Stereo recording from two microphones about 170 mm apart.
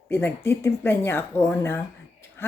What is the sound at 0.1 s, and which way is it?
Speech, 15° left (ahead or behind).